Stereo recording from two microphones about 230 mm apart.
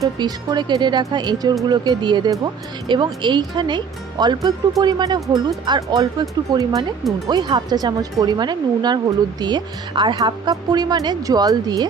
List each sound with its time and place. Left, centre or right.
0.0 s speech: centre